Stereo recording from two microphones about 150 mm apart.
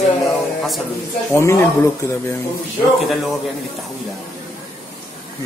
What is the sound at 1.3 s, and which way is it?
Speech, 20° left (ahead or behind).